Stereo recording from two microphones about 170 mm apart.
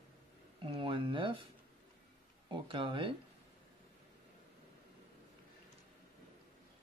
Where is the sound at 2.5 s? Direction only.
30° right (ahead or behind).